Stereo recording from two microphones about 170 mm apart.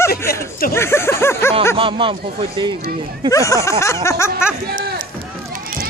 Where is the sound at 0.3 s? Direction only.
60° left (ahead or behind).